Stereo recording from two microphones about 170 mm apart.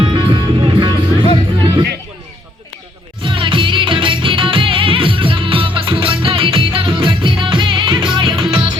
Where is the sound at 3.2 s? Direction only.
30° right (ahead or behind).